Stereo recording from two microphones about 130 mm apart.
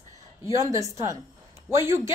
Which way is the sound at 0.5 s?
25° right (ahead or behind).